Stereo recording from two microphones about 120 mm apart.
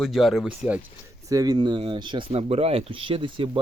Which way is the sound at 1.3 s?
30° right (ahead or behind).